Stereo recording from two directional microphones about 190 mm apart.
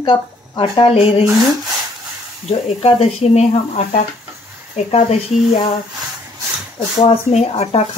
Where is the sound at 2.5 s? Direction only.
30° left (ahead or behind).